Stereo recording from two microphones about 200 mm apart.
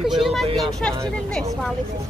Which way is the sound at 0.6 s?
5° left (ahead or behind).